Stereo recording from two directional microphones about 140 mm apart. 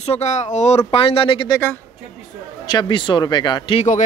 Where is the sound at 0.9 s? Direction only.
40° left (ahead or behind).